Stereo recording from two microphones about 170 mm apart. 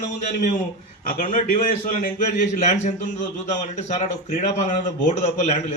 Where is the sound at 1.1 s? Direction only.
50° left (ahead or behind).